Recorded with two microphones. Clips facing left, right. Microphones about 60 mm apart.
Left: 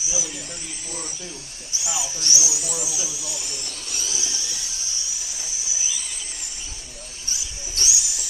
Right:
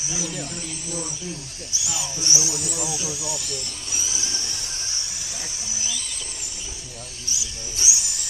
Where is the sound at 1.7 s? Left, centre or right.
Left.